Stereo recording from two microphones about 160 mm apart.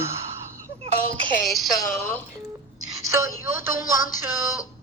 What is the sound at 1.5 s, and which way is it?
Speech, centre (ahead or behind).